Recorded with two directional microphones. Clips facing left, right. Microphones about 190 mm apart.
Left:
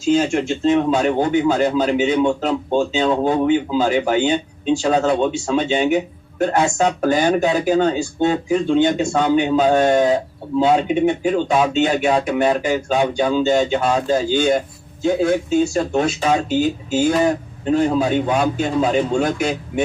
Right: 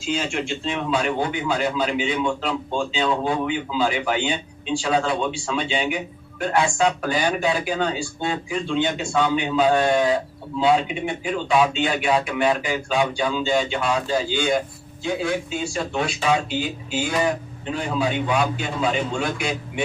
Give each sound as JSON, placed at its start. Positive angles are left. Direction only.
{"t": 0.1, "sound": "speech", "side_deg": 45}